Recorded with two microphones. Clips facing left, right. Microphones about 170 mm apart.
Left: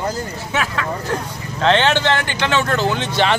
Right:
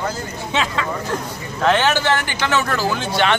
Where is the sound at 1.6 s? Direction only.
10° right (ahead or behind).